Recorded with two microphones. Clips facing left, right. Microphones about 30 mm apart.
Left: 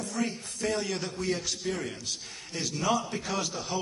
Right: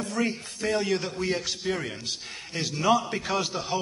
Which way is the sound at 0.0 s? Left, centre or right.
Right.